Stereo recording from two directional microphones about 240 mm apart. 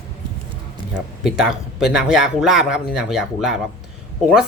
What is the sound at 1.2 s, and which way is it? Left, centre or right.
Speech, centre.